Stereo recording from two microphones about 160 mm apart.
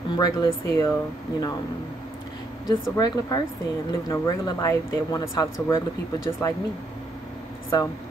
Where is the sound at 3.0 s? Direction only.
25° left (ahead or behind).